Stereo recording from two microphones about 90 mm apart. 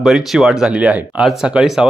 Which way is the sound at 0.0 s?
5° right (ahead or behind).